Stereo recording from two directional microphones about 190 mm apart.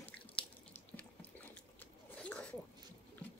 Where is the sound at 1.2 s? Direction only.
10° left (ahead or behind).